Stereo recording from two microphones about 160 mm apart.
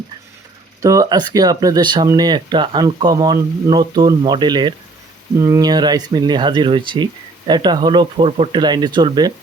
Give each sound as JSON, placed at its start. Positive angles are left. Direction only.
{"t": 0.8, "sound": "speech", "side_deg": -20}